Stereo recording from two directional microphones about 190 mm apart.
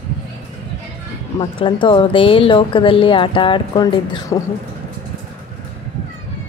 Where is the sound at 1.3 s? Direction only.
25° left (ahead or behind).